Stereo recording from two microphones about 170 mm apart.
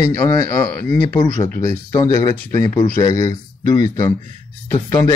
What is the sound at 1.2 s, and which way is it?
Speech, 20° left (ahead or behind).